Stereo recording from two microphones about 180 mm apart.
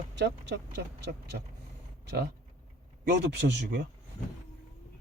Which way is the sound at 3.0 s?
70° right (ahead or behind).